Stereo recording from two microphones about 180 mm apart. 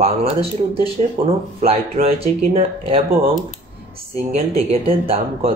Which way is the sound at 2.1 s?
35° right (ahead or behind).